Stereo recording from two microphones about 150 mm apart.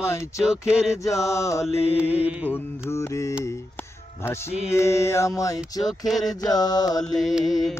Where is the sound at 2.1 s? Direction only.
10° right (ahead or behind).